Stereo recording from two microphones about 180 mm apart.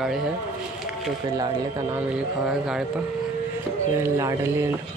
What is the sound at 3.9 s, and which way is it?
Speech, 15° right (ahead or behind).